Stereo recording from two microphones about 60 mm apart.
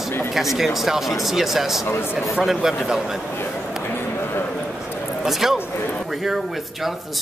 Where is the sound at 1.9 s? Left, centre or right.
Left.